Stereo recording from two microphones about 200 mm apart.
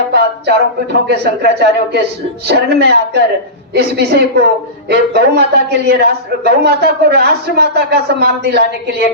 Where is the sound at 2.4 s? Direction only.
55° right (ahead or behind).